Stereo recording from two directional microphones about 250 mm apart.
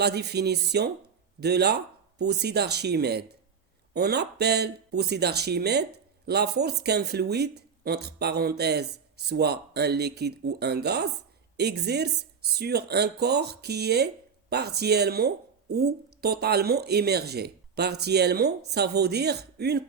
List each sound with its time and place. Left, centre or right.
0.0 s speech: right